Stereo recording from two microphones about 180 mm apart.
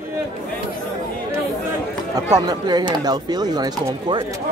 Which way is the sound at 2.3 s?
20° right (ahead or behind).